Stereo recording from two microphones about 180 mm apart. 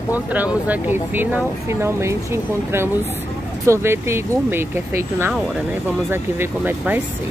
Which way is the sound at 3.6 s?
15° right (ahead or behind).